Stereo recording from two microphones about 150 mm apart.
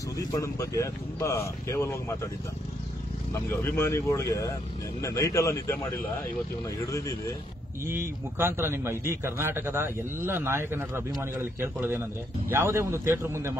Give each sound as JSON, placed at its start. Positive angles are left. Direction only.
{"t": 0.2, "sound": "speech", "side_deg": 20}
{"t": 3.3, "sound": "speech", "side_deg": 15}
{"t": 7.8, "sound": "a man's voice", "side_deg": -15}